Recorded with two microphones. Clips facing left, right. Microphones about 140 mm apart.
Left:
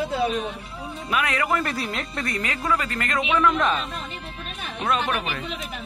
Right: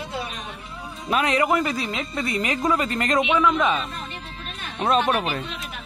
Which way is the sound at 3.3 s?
5° right (ahead or behind).